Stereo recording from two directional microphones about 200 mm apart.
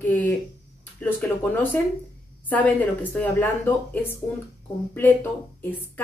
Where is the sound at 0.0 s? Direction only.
10° left (ahead or behind).